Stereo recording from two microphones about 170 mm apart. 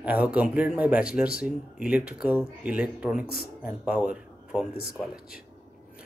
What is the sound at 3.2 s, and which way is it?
Speech, 65° left (ahead or behind).